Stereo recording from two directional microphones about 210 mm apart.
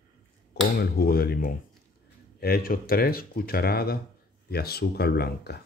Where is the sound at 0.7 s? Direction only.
45° left (ahead or behind).